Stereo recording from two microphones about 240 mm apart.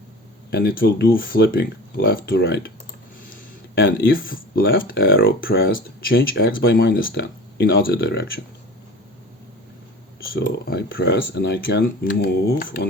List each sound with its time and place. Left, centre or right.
0.5 s speech: left
3.8 s speech: left
10.3 s speech: left